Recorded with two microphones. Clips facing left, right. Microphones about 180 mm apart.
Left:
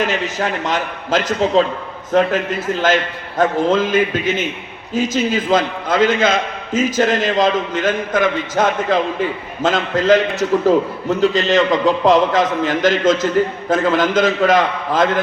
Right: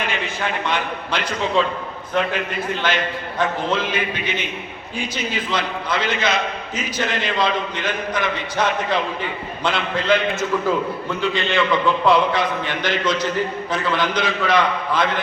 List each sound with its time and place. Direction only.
0.0 s a man's voice: 40° left (ahead or behind)
2.8 s a man's voice: 45° left (ahead or behind)